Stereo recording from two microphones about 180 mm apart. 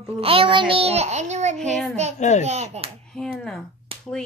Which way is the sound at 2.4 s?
35° right (ahead or behind).